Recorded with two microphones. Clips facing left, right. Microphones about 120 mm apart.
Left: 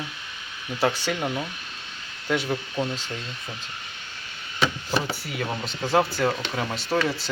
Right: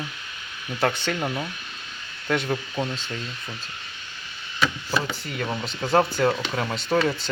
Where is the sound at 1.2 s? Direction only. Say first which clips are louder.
Even; 5° right (ahead or behind).